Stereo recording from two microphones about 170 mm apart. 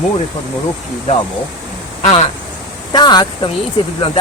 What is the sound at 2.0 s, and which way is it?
Speech, 40° left (ahead or behind).